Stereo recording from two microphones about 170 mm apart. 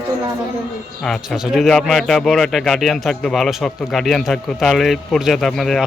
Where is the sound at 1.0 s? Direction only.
Centre (ahead or behind).